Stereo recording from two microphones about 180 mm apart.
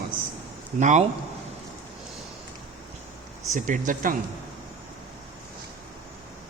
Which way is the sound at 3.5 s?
45° right (ahead or behind).